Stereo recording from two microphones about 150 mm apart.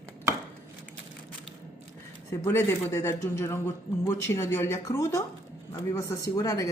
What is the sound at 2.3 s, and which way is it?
A man's voice, 20° left (ahead or behind).